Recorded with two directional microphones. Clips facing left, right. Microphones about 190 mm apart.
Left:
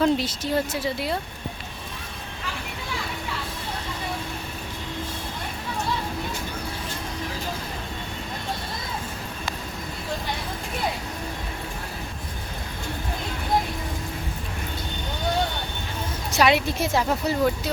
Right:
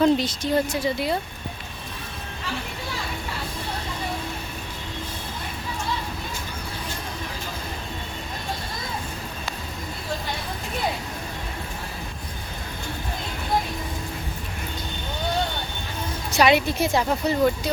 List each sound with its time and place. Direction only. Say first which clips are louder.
0.0 s speech: right 2 dB; 5° left (ahead or behind)
16.3 s speech: right 2 dB; centre (ahead or behind)